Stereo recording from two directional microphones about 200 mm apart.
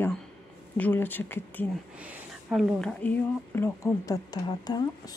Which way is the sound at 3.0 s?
10° left (ahead or behind).